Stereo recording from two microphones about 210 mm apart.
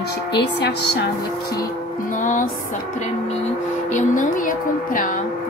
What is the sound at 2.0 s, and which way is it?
Speech, 40° left (ahead or behind).